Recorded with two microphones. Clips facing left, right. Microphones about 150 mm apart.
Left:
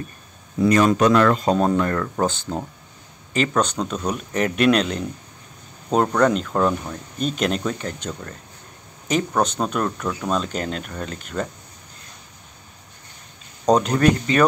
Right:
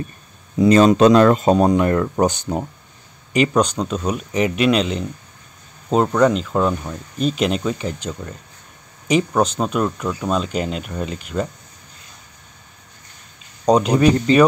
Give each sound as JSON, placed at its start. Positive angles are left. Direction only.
{"t": 0.6, "sound": "speech", "side_deg": -25}
{"t": 13.7, "sound": "speech", "side_deg": -10}